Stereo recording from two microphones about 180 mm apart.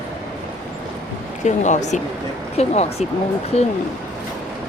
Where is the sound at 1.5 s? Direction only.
40° left (ahead or behind).